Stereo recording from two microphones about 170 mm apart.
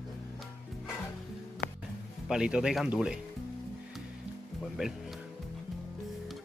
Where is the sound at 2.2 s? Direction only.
5° right (ahead or behind).